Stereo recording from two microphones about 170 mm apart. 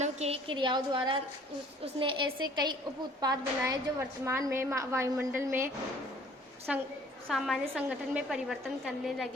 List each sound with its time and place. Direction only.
0.0 s a woman's voice: 40° right (ahead or behind); by 5.7 s 15° right (ahead or behind)
6.7 s a woman's voice: 5° right (ahead or behind)